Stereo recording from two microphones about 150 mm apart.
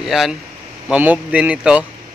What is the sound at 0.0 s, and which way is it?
Speech, centre (ahead or behind).